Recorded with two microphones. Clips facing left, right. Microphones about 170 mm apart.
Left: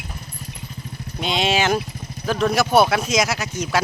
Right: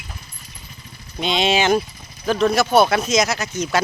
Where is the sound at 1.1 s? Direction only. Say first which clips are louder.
Right 2 dB; 5° left (ahead or behind).